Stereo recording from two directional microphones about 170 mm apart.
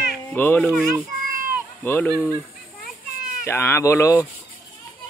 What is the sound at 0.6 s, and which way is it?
Speech, centre (ahead or behind).